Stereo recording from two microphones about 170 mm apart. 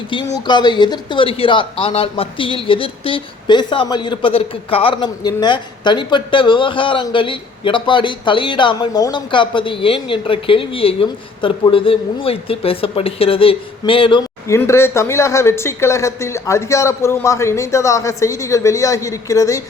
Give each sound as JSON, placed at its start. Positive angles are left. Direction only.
{"t": 0.3, "sound": "speech", "side_deg": 25}
{"t": 14.4, "sound": "speech", "side_deg": 15}